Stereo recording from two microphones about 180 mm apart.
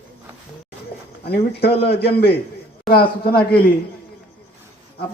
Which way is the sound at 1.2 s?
65° left (ahead or behind).